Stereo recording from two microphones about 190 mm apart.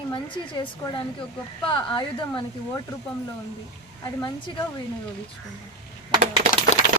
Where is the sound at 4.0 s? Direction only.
20° left (ahead or behind).